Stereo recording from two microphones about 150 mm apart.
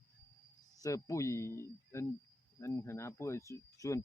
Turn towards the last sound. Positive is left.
turn(degrees=20)  # may be behind; listen again after turning